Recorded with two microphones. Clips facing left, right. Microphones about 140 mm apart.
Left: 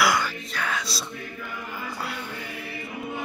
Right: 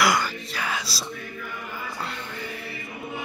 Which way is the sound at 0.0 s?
Centre (ahead or behind).